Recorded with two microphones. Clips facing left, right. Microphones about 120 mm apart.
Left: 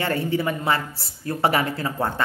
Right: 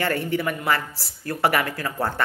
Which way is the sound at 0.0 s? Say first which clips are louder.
Left 1 dB; 25° left (ahead or behind).